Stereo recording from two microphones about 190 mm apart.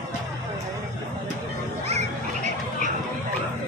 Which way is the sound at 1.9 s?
35° right (ahead or behind).